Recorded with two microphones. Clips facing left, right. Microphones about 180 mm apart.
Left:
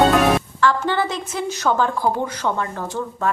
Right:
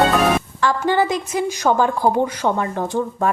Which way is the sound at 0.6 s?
15° right (ahead or behind).